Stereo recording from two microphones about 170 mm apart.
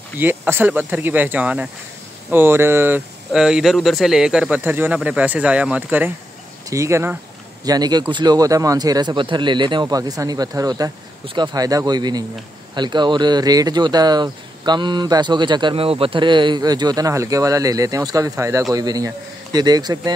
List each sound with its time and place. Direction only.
0.2 s speech: 10° right (ahead or behind)